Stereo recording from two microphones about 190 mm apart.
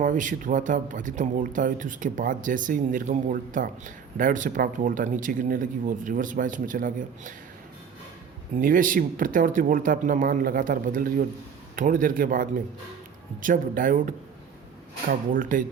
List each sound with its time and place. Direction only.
0.0 s a man's voice: 45° right (ahead or behind)
8.5 s a man's voice: 45° right (ahead or behind)